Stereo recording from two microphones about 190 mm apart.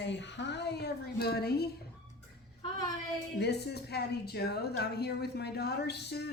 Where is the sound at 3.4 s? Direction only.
60° left (ahead or behind).